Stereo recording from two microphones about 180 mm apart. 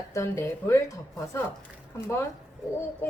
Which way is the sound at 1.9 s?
15° left (ahead or behind).